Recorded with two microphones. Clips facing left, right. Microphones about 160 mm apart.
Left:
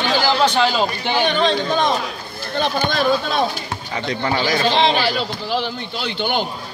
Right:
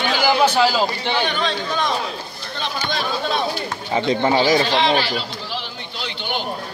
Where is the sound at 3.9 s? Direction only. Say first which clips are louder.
Right 5 dB; 25° right (ahead or behind).